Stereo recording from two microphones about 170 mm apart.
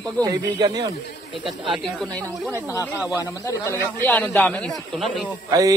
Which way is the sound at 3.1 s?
20° left (ahead or behind).